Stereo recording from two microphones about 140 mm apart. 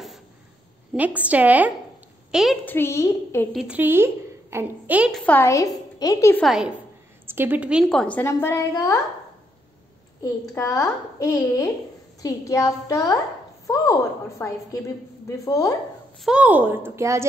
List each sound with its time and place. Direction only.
0.9 s a woman's voice: 10° right (ahead or behind)
2.6 s a woman's voice: 15° left (ahead or behind)
3.5 s a woman's voice: 10° right (ahead or behind)
5.1 s a woman's voice: 10° left (ahead or behind)
6.4 s a woman's voice: 5° right (ahead or behind)
7.2 s a woman's voice: 15° right (ahead or behind)
7.9 s a woman's voice: 5° left (ahead or behind)
8.2 s a woman's voice: 15° left (ahead or behind)
10.5 s a woman's voice: 20° left (ahead or behind)
16.3 s a woman's voice: 10° right (ahead or behind)